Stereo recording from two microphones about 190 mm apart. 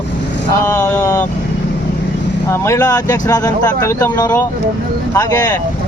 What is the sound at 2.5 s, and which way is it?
Speech, 15° left (ahead or behind).